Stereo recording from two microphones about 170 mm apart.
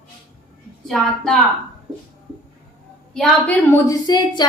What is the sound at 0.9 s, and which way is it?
Speech, centre (ahead or behind).